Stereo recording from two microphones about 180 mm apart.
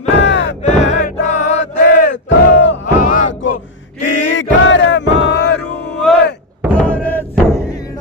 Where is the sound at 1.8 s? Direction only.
75° left (ahead or behind).